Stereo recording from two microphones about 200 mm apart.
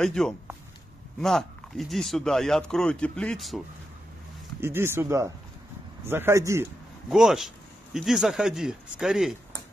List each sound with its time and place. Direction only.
0.0 s speech: centre (ahead or behind)
4.6 s speech: 10° right (ahead or behind)
7.1 s speech: centre (ahead or behind)